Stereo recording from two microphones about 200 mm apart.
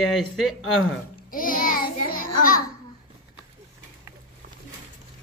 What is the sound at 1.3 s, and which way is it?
Child singing, 45° left (ahead or behind).